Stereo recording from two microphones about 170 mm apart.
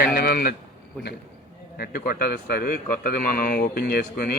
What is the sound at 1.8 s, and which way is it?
A man's voice, 60° left (ahead or behind).